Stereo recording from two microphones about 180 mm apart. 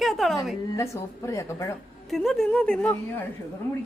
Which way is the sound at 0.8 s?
15° left (ahead or behind).